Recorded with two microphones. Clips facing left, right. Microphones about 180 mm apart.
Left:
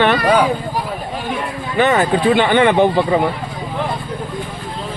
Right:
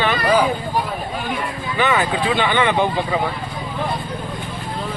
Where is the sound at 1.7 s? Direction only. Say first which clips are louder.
Left 5 dB; 50° left (ahead or behind).